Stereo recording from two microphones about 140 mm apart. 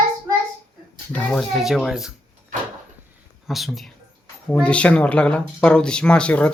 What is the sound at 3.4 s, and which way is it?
Speech, centre (ahead or behind).